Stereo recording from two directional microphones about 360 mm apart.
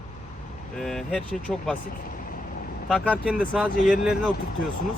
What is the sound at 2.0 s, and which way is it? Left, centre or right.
Vehicle, left.